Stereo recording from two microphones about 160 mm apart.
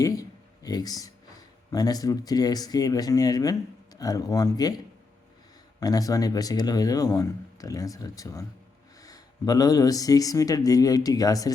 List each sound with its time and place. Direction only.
0.0 s a sound: 20° left (ahead or behind)
1.7 s speech: 25° left (ahead or behind)
5.8 s speech: 20° left (ahead or behind)